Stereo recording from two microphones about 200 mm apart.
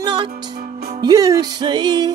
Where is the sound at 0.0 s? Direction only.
25° right (ahead or behind).